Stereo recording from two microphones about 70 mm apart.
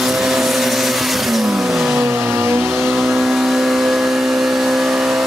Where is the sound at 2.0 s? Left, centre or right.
Right.